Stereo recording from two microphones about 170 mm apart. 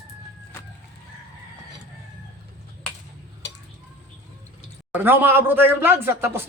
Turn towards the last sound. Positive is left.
turn(degrees=-15)  # may be behind; listen again after turning